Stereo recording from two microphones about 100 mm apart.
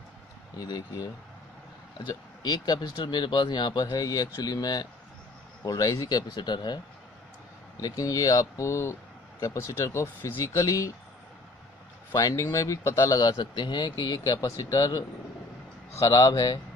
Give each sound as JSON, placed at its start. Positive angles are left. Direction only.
{"t": 0.6, "sound": "speech", "side_deg": 40}
{"t": 7.8, "sound": "speech", "side_deg": 35}
{"t": 12.1, "sound": "speech", "side_deg": 35}